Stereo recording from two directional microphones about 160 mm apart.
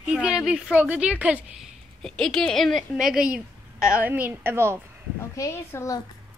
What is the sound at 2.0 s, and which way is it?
A woman's voice, 5° left (ahead or behind).